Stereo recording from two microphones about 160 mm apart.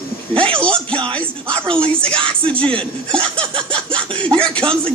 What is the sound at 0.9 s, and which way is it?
Speech, 30° right (ahead or behind).